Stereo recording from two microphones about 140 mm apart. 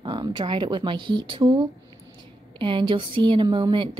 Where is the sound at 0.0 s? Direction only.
35° right (ahead or behind).